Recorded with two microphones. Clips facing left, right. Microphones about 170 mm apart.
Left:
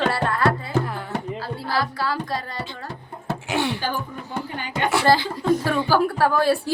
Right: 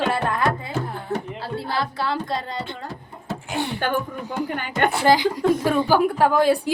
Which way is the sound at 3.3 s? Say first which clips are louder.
Left 3 dB; 80° left.